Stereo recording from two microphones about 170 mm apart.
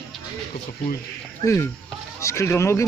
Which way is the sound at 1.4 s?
15° left (ahead or behind).